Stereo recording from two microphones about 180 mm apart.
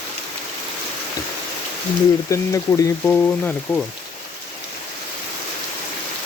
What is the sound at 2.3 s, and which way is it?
Speech, 15° left (ahead or behind).